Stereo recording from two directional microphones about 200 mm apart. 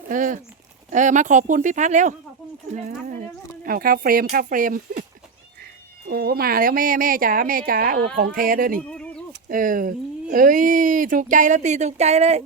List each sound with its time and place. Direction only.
0.1 s speech: 40° right (ahead or behind)
6.1 s speech: 50° right (ahead or behind)
8.8 s bird: 5° left (ahead or behind)
9.5 s speech: 45° right (ahead or behind)